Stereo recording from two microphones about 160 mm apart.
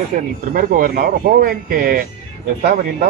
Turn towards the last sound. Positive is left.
turn(degrees=-60)  # may be behind; listen again after turning